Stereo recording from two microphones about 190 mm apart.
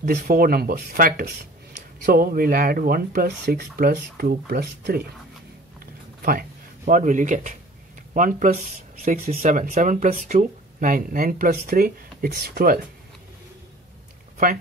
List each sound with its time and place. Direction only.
0.0 s speech: 50° right (ahead or behind)
6.2 s speech: 45° right (ahead or behind)